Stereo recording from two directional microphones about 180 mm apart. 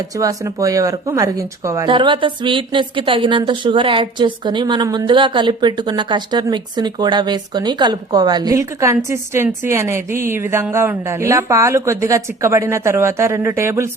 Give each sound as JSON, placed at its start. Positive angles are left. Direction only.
{"t": 0.2, "sound": "speech", "side_deg": -20}